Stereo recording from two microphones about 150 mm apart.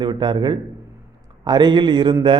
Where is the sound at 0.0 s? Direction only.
30° right (ahead or behind).